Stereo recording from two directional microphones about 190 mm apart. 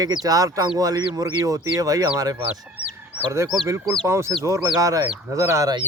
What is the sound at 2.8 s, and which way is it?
Chicken, 10° right (ahead or behind).